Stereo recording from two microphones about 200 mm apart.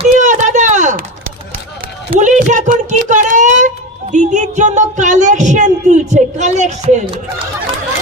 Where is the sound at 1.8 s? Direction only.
45° right (ahead or behind).